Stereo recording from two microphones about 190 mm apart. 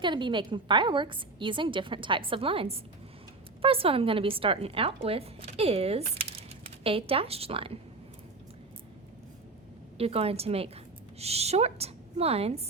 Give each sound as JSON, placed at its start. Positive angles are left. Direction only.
{"t": 0.0, "sound": "a woman's voice", "side_deg": -25}
{"t": 10.0, "sound": "speech", "side_deg": -30}